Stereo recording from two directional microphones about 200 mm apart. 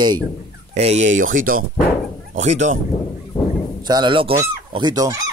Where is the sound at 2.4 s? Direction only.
35° right (ahead or behind).